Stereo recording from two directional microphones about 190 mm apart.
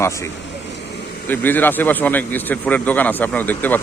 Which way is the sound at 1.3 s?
10° left (ahead or behind).